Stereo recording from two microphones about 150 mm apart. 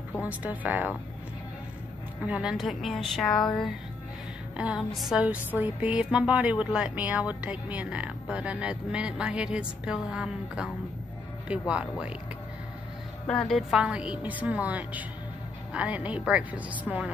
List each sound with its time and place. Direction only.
0.2 s speech: 10° right (ahead or behind)
2.2 s speech: 5° right (ahead or behind)
13.3 s speech: 5° left (ahead or behind)